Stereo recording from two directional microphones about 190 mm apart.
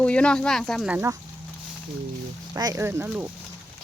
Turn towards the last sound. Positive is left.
turn(degrees=-10)  # may be behind; listen again after turning